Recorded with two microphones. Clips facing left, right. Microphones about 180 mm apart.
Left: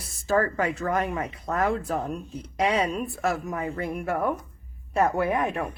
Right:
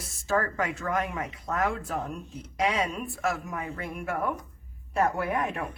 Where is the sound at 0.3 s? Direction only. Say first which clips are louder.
Left 4 dB; 35° left (ahead or behind).